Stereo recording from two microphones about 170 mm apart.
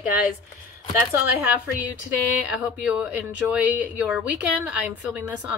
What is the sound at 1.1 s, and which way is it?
Speech, 10° right (ahead or behind).